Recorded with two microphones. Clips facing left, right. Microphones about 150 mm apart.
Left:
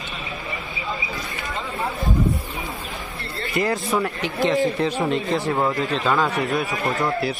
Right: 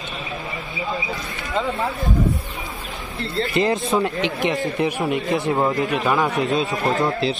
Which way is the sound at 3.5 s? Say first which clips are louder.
Right 2 dB; 20° right (ahead or behind).